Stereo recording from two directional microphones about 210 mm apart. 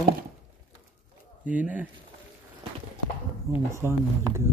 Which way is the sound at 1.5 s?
5° right (ahead or behind).